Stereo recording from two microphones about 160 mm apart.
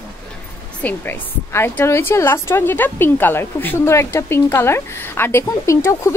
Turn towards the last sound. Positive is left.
turn(degrees=20)  # may be behind; listen again after turning